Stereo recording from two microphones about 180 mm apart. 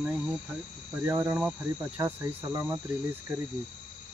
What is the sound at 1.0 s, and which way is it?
Cricket, 15° right (ahead or behind).